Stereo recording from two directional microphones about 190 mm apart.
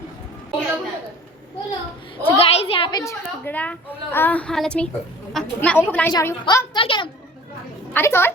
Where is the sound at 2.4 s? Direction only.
30° left (ahead or behind).